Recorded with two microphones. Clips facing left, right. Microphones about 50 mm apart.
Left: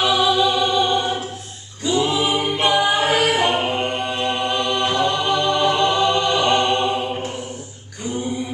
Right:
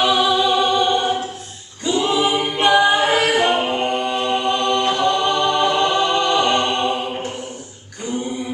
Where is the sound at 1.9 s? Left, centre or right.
Centre.